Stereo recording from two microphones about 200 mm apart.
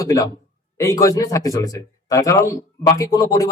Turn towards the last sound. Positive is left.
turn(degrees=20)  # may be behind; listen again after turning